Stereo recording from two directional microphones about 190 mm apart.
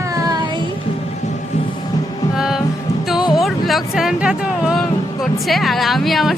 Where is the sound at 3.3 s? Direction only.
Centre (ahead or behind).